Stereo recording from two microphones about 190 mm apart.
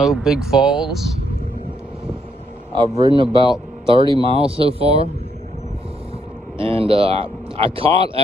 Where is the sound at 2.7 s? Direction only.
20° right (ahead or behind).